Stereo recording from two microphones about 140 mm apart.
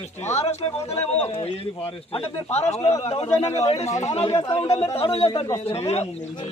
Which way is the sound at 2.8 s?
45° left (ahead or behind).